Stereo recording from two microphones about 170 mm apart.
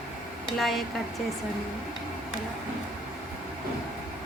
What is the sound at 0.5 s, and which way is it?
Speech, centre (ahead or behind).